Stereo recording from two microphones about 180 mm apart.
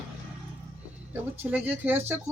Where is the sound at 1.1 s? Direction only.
10° right (ahead or behind).